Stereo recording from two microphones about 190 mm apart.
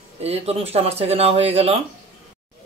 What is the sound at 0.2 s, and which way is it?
Speech, 30° right (ahead or behind).